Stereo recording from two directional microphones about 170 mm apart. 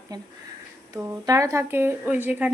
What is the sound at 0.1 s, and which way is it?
A woman's voice, 25° right (ahead or behind).